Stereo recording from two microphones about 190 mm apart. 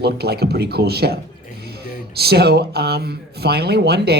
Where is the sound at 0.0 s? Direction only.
55° right (ahead or behind).